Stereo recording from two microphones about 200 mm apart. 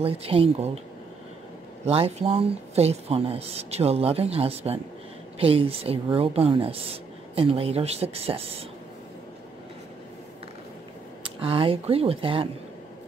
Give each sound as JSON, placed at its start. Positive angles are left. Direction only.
{"t": 0.0, "sound": "speech", "side_deg": -30}
{"t": 1.9, "sound": "speech", "side_deg": -30}
{"t": 11.2, "sound": "speech", "side_deg": -25}